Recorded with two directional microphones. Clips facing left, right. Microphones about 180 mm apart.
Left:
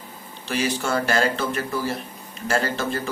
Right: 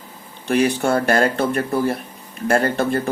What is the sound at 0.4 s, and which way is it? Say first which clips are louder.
A man's voice: right 7 dB; 55° right (ahead or behind).